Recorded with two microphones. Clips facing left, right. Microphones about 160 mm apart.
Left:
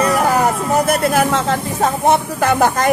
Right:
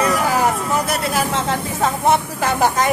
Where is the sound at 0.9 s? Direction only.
50° left (ahead or behind).